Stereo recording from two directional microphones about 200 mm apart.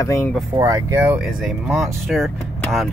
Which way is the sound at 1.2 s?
Centre (ahead or behind).